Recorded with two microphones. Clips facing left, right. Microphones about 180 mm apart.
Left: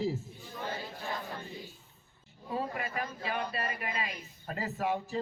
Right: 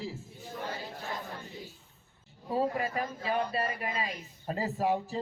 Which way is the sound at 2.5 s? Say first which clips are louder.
Right 5 dB; 35° right (ahead or behind).